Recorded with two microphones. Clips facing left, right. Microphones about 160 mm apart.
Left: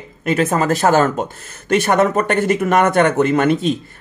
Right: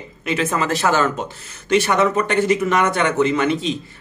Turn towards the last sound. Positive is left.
turn(degrees=50)  # may be behind; listen again after turning